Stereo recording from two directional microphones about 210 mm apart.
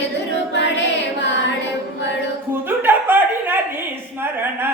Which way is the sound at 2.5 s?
10° right (ahead or behind).